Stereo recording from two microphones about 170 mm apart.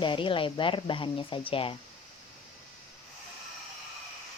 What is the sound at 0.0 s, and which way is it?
Speech, 30° left (ahead or behind).